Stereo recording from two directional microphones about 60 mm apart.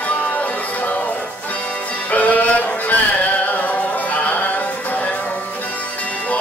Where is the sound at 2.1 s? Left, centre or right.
Left.